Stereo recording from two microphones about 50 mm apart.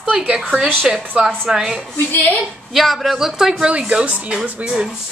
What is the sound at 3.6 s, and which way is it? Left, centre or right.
Speech, right.